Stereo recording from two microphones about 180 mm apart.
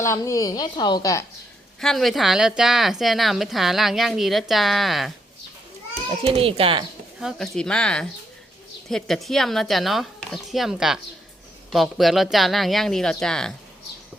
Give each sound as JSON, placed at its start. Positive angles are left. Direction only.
{"t": 0.0, "sound": "a woman's voice", "side_deg": 15}
{"t": 1.8, "sound": "speech", "side_deg": 0}
{"t": 6.1, "sound": "a child's voice", "side_deg": -30}
{"t": 7.2, "sound": "speech", "side_deg": 0}